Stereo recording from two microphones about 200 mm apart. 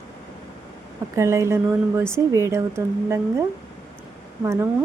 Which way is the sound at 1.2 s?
15° right (ahead or behind).